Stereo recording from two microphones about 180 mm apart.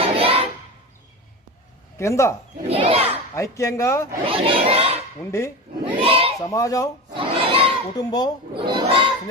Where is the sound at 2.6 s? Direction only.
35° right (ahead or behind).